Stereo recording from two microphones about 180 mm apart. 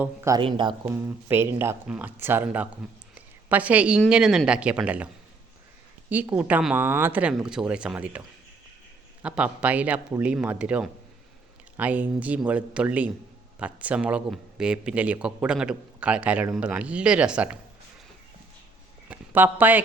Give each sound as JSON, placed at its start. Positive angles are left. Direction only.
{"t": 0.0, "sound": "speech", "side_deg": -15}
{"t": 0.3, "sound": "speech", "side_deg": -25}
{"t": 0.9, "sound": "speech", "side_deg": -15}
{"t": 19.0, "sound": "a sound", "side_deg": -10}